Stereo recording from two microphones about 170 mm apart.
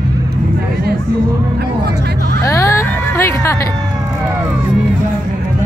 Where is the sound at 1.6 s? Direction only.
75° right (ahead or behind).